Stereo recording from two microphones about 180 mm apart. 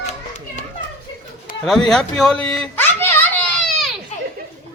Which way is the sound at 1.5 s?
50° left (ahead or behind).